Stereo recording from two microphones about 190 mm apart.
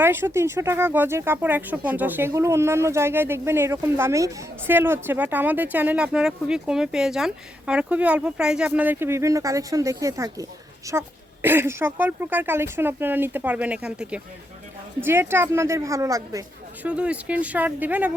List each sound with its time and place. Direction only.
0.0 s speech: 10° right (ahead or behind)
16.8 s speech: 5° right (ahead or behind)